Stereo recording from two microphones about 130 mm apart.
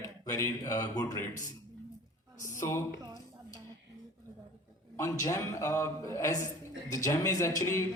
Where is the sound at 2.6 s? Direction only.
20° left (ahead or behind).